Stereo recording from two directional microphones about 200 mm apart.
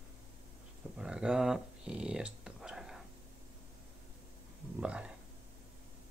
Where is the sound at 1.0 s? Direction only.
5° right (ahead or behind).